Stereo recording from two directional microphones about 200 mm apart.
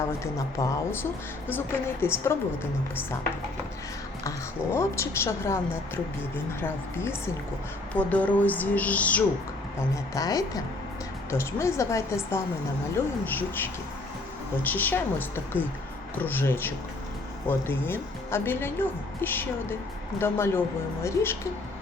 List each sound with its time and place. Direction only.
0.3 s a woman's voice: 15° left (ahead or behind)
4.7 s a woman's voice: 15° left (ahead or behind)
9.9 s a woman's voice: 15° left (ahead or behind)